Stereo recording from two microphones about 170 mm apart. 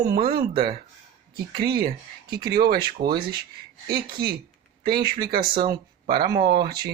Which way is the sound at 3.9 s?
25° right (ahead or behind).